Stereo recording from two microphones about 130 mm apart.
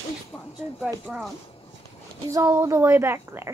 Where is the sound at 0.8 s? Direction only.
5° right (ahead or behind).